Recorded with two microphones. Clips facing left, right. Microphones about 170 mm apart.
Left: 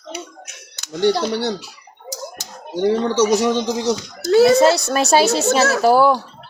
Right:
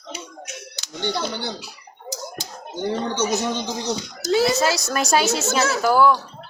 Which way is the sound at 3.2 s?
90° left.